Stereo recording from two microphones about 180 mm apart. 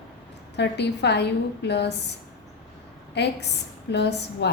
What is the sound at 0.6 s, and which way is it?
A woman's voice, 70° left (ahead or behind).